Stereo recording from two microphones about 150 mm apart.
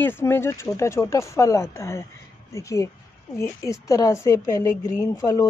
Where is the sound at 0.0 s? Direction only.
15° left (ahead or behind).